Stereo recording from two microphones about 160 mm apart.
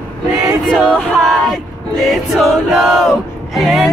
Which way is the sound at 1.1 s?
Centre (ahead or behind).